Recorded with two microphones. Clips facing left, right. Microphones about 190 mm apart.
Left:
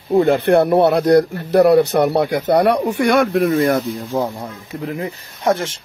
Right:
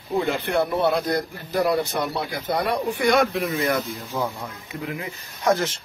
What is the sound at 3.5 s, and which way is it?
Speech, 45° left (ahead or behind).